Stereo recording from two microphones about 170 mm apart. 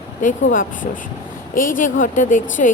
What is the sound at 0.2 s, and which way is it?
Speech, 50° left (ahead or behind).